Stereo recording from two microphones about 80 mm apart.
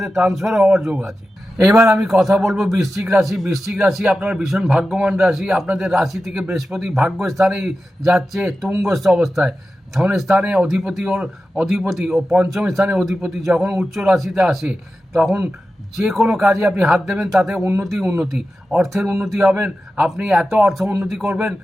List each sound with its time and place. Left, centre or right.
0.0 s speech: centre
17.6 s a man's voice: right
17.8 s speech: centre